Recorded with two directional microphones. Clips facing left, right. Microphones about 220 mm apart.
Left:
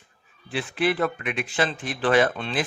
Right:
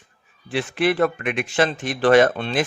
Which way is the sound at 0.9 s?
45° right (ahead or behind).